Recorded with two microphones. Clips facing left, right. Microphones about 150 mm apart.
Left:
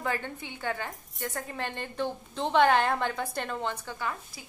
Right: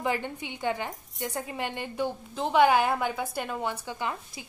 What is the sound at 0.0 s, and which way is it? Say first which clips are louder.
A woman's voice: right 3 dB; 15° right (ahead or behind).